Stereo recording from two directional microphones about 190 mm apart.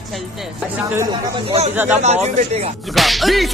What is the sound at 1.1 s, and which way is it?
Speech, 25° right (ahead or behind).